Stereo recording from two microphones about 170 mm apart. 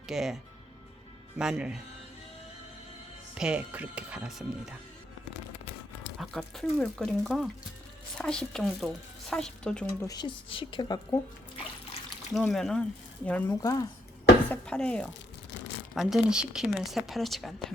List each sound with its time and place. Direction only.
0.1 s speech: centre (ahead or behind)
1.4 s speech: 5° right (ahead or behind)
3.3 s speech: 5° right (ahead or behind)
6.1 s speech: centre (ahead or behind)
9.9 s speech: 20° left (ahead or behind)
12.3 s speech: 5° left (ahead or behind)
13.6 s speech: 20° left (ahead or behind)
14.5 s speech: 5° left (ahead or behind)